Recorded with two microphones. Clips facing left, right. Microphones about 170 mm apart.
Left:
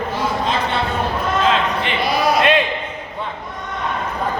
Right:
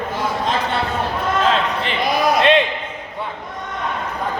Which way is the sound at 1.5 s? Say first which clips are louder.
Left 1 dB; 35° right (ahead or behind).